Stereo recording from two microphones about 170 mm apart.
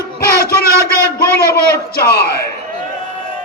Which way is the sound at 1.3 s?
65° left (ahead or behind).